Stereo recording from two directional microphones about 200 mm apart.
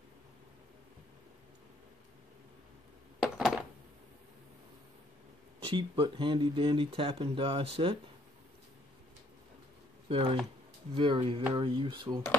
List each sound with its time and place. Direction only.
3.2 s a sound: 5° right (ahead or behind)
5.7 s speech: 25° right (ahead or behind)
10.0 s speech: 25° right (ahead or behind)